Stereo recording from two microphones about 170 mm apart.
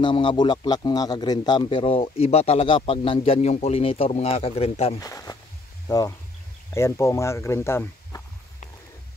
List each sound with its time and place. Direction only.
0.0 s a man's voice: 30° left (ahead or behind)
4.9 s speech: 20° left (ahead or behind)